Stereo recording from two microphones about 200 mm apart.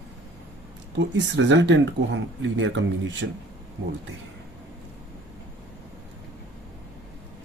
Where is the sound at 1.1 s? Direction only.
65° right (ahead or behind).